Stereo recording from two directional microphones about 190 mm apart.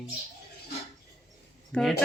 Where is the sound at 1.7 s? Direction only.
Centre (ahead or behind).